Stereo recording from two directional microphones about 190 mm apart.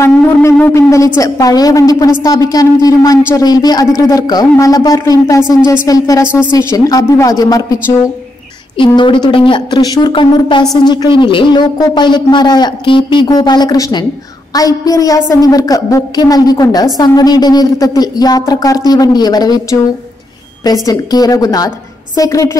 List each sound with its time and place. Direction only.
0.0 s a woman's voice: 15° left (ahead or behind)
8.7 s speech: 25° left (ahead or behind)
20.8 s speech: 20° left (ahead or behind)